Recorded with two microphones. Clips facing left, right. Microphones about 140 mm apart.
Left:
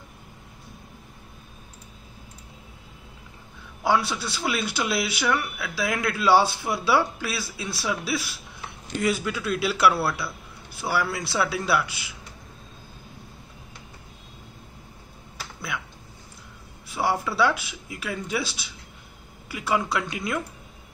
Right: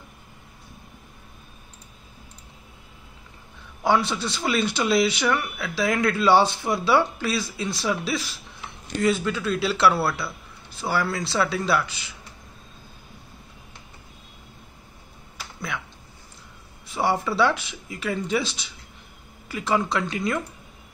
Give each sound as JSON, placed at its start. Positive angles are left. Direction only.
{"t": 3.8, "sound": "speech", "side_deg": 5}
{"t": 10.7, "sound": "a man's voice", "side_deg": 10}
{"t": 16.8, "sound": "a man's voice", "side_deg": 5}